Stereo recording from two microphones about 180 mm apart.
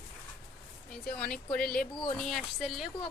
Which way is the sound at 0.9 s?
5° left (ahead or behind).